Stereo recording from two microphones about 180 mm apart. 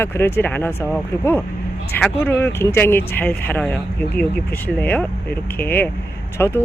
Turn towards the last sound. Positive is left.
turn(degrees=15)  # may be behind; listen again after turning